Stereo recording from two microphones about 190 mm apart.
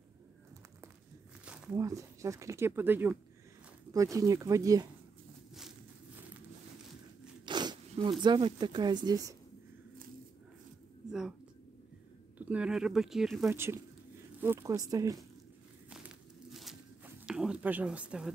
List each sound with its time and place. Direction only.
1.4 s a sound: 5° right (ahead or behind)
1.8 s speech: 15° right (ahead or behind)
7.4 s speech: 25° right (ahead or behind)
11.1 s a woman's voice: 5° right (ahead or behind)
12.4 s speech: 5° right (ahead or behind)
13.5 s speech: 15° right (ahead or behind)
15.9 s a sound: centre (ahead or behind)